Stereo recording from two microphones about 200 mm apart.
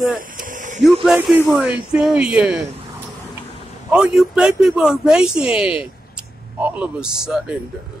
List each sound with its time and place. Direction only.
0.4 s a sound: 40° right (ahead or behind)
1.0 s a man's voice: 5° right (ahead or behind)
3.9 s a man's voice: 5° right (ahead or behind)